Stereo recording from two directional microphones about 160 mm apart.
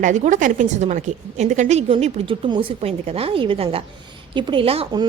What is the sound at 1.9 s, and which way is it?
A woman's voice, 35° right (ahead or behind).